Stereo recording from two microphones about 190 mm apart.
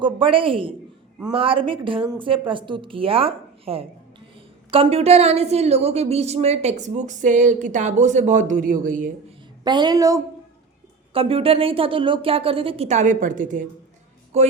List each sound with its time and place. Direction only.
0.0 s a woman's voice: 25° right (ahead or behind); by 9.1 s 45° right (ahead or behind)
9.6 s a woman's voice: 25° right (ahead or behind)
11.1 s a woman's voice: 30° right (ahead or behind)